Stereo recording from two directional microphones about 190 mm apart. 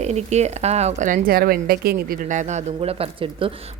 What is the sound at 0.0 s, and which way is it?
A woman's voice, 35° right (ahead or behind).